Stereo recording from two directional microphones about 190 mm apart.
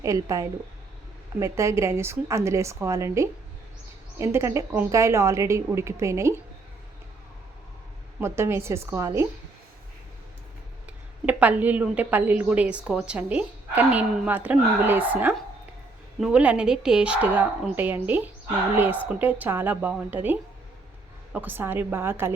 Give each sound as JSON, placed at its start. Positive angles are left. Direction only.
{"t": 0.0, "sound": "a woman's voice", "side_deg": -15}
{"t": 8.2, "sound": "a woman's voice", "side_deg": -15}
{"t": 11.3, "sound": "a woman's voice", "side_deg": -10}